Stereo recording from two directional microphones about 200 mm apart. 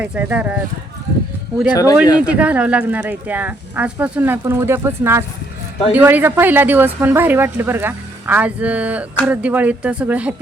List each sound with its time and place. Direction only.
0.0 s speech: 5° right (ahead or behind)
1.7 s speech: 20° left (ahead or behind)
2.1 s speech: 5° right (ahead or behind)